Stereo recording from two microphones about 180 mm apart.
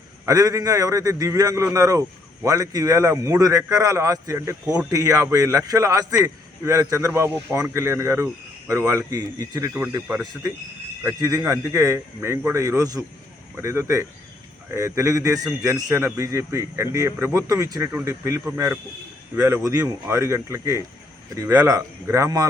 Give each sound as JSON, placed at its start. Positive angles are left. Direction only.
{"t": 0.3, "sound": "speech", "side_deg": -20}